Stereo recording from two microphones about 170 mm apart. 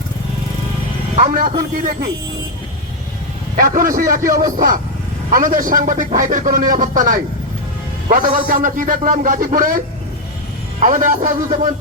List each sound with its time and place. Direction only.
1.1 s a sound: 50° right (ahead or behind)
1.7 s a man's voice: 55° right (ahead or behind)
3.6 s a man's voice: 55° right (ahead or behind)